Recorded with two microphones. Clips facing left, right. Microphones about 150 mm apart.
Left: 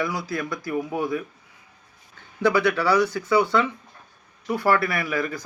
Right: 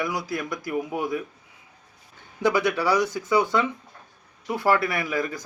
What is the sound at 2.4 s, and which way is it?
A man's voice, 15° right (ahead or behind).